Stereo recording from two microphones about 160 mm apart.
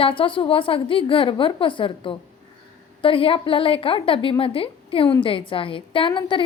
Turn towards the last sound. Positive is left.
turn(degrees=30)  # may be behind; listen again after turning